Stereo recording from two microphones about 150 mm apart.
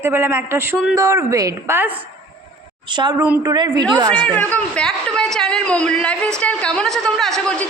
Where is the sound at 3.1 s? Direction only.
10° right (ahead or behind).